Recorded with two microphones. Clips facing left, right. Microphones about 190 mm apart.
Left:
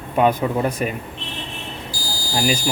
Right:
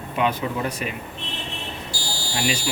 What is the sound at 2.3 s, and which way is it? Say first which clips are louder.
Speech: left 5 dB; 40° left (ahead or behind).